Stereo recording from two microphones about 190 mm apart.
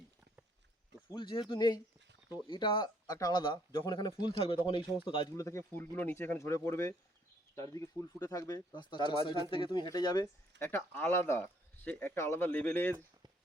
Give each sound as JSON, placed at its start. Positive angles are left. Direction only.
{"t": 1.1, "sound": "speech", "side_deg": 25}